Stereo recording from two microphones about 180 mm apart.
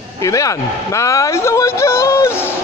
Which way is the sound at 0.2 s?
20° left (ahead or behind).